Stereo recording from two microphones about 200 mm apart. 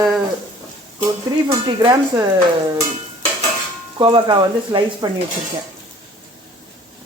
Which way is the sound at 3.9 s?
25° right (ahead or behind).